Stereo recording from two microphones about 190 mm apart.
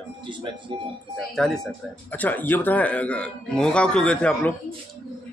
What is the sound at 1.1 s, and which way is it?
Speech, centre (ahead or behind).